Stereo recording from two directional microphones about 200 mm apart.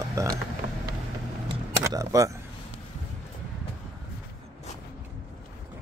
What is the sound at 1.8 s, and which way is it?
Speech, 15° right (ahead or behind).